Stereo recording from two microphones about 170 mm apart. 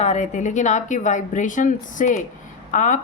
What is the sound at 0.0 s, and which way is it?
A woman's voice, 40° left (ahead or behind).